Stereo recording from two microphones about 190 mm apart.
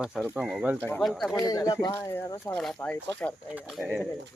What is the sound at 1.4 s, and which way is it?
Speech, 20° left (ahead or behind).